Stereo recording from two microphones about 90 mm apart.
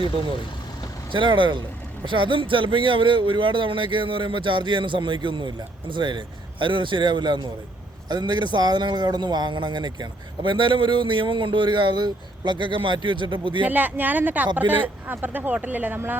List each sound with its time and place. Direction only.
1.1 s a man's voice: 65° right (ahead or behind)
13.7 s speech: 20° right (ahead or behind)